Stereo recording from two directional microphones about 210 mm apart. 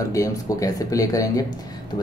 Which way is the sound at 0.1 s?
15° left (ahead or behind).